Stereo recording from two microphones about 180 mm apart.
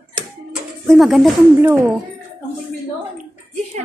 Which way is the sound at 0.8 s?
Centre (ahead or behind).